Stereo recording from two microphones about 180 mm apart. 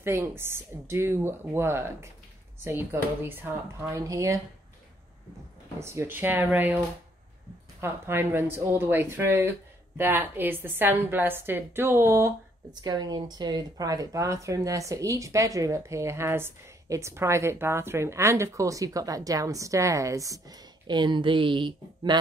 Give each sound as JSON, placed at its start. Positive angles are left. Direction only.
{"t": 0.0, "sound": "speech", "side_deg": -15}
{"t": 5.8, "sound": "speech", "side_deg": -15}
{"t": 7.8, "sound": "speech", "side_deg": -10}